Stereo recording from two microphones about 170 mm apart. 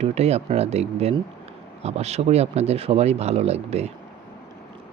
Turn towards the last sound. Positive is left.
turn(degrees=-40)  # may be behind; listen again after turning